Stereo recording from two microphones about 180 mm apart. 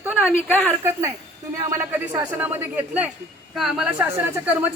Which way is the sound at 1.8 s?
10° right (ahead or behind).